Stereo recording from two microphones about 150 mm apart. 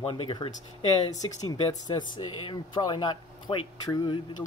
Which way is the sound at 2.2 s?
35° left (ahead or behind).